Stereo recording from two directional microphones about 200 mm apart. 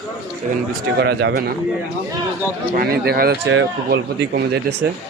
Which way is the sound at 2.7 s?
50° right (ahead or behind).